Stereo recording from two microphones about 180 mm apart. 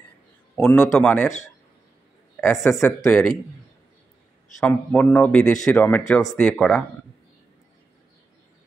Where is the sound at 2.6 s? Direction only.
15° left (ahead or behind).